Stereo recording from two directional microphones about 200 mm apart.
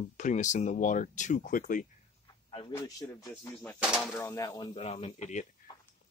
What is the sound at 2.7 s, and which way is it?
Speech, 15° left (ahead or behind).